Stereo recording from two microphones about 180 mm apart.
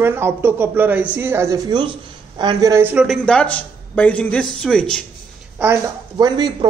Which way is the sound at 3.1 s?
5° left (ahead or behind).